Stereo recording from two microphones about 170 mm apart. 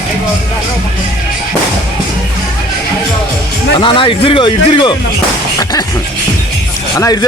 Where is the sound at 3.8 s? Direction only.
30° left (ahead or behind).